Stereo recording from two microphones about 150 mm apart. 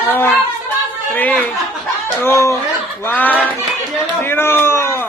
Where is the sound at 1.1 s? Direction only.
10° left (ahead or behind).